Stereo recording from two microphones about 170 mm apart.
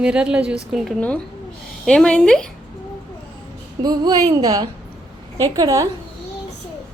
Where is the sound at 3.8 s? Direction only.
20° right (ahead or behind).